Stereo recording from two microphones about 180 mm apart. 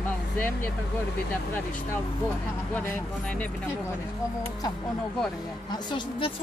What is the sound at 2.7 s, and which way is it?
Speech, 10° left (ahead or behind).